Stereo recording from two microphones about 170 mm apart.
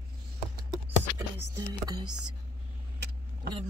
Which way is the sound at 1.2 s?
20° right (ahead or behind).